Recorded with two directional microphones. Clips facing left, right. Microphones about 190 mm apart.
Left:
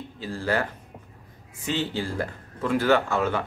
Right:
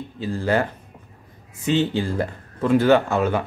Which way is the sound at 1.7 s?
20° right (ahead or behind).